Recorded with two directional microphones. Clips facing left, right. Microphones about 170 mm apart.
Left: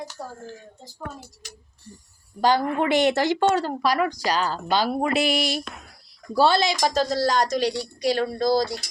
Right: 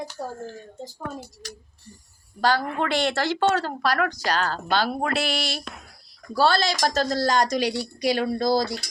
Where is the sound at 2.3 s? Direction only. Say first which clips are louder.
Left 2 dB; 15° left (ahead or behind).